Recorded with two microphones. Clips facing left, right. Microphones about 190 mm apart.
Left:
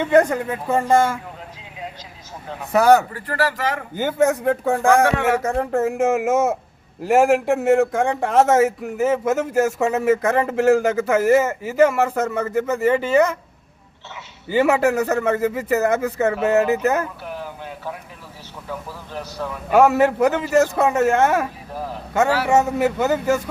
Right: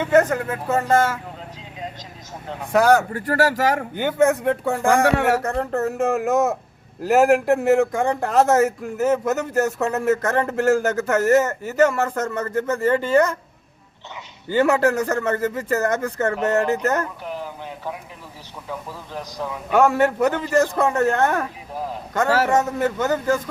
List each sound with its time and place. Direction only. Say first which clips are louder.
0.1 s speech: left 1 dB; 10° left (ahead or behind)
2.7 s speech: left 2 dB; 10° left (ahead or behind)
3.1 s speech: right 3 dB; 45° right (ahead or behind)
4.3 s speech: left 1 dB; centre (ahead or behind)
14.4 s speech: left 1 dB; 10° left (ahead or behind)
17.2 s a sound: right 1 dB; 15° right (ahead or behind)
18.9 s a man's voice: left 1 dB; 15° right (ahead or behind)
19.7 s speech: left 2 dB; 5° left (ahead or behind)